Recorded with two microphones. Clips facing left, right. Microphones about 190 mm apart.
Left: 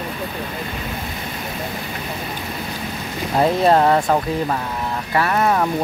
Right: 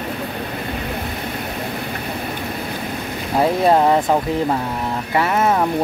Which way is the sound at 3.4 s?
15° right (ahead or behind).